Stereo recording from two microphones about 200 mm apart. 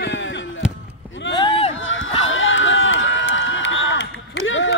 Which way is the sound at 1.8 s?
75° left (ahead or behind).